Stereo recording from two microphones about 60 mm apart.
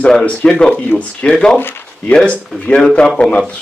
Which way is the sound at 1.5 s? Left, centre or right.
Left.